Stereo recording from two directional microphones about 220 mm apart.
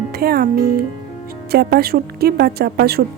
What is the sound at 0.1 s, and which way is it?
A woman's voice, 45° right (ahead or behind).